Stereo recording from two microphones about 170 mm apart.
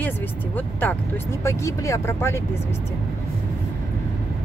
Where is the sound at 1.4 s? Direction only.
15° left (ahead or behind).